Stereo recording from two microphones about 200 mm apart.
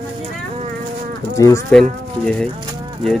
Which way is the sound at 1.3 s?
15° left (ahead or behind).